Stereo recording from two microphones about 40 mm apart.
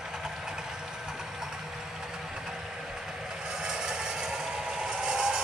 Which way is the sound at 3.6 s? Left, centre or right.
Centre.